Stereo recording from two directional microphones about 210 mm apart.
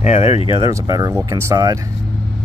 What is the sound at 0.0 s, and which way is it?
Speech, 30° left (ahead or behind).